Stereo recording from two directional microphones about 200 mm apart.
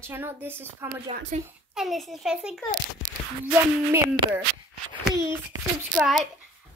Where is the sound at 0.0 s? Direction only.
10° right (ahead or behind).